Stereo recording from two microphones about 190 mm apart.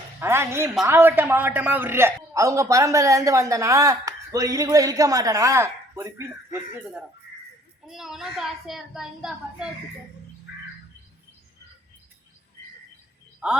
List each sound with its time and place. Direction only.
0.2 s a man's voice: 15° right (ahead or behind)
7.9 s a woman's voice: centre (ahead or behind)